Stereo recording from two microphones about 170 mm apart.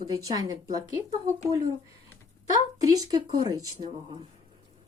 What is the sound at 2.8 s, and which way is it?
A woman's voice, 20° right (ahead or behind).